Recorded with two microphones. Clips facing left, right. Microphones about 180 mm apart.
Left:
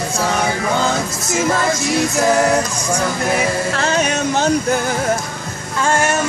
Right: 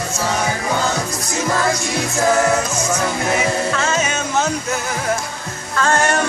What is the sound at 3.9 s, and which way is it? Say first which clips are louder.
Music: left 3 dB; 65° left (ahead or behind).